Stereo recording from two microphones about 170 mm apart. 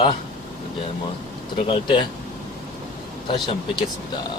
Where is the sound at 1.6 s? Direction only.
30° left (ahead or behind).